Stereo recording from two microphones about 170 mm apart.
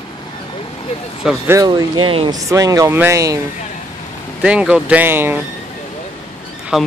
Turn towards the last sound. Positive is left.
turn(degrees=0)  # may be behind; listen again after turning